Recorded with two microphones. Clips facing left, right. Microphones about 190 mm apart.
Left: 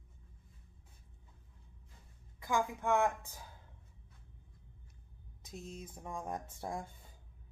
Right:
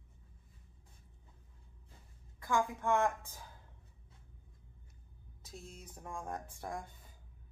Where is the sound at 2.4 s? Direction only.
15° left (ahead or behind).